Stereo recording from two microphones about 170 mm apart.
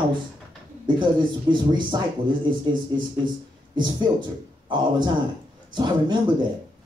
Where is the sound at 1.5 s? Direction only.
25° right (ahead or behind).